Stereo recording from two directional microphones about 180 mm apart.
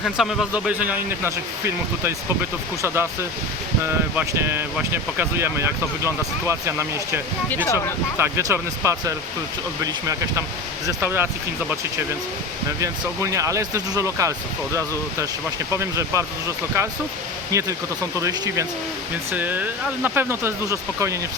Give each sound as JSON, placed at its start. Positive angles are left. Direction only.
{"t": 0.0, "sound": "speech", "side_deg": 0}
{"t": 7.5, "sound": "speech", "side_deg": 10}
{"t": 8.2, "sound": "speech", "side_deg": -15}
{"t": 12.8, "sound": "speech", "side_deg": -15}